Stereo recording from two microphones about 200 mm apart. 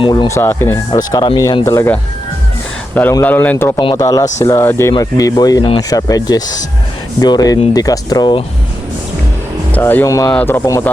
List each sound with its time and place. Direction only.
0.0 s speech: 20° left (ahead or behind)
3.8 s speech: 20° left (ahead or behind)
9.7 s speech: 10° left (ahead or behind)